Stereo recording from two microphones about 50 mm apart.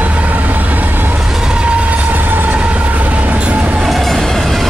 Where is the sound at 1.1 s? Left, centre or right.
Centre; by 2.5 s right.